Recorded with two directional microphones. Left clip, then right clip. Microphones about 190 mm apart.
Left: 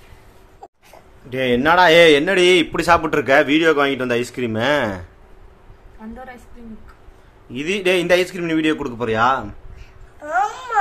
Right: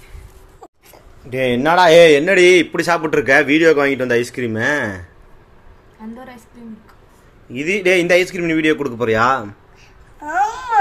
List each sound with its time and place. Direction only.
1.3 s a man's voice: centre (ahead or behind)
7.5 s a man's voice: centre (ahead or behind)
10.2 s babbling: 15° left (ahead or behind)